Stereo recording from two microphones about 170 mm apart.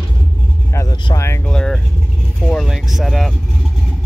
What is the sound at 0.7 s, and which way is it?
Vehicle, 15° left (ahead or behind).